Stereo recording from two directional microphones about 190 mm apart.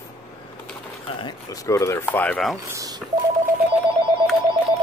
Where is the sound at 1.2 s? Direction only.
15° left (ahead or behind).